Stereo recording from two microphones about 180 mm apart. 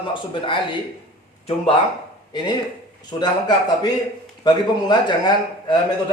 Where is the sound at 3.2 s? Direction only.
25° left (ahead or behind).